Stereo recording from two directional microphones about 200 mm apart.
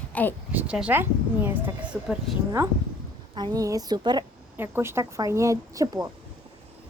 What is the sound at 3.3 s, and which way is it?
Speech, 20° right (ahead or behind).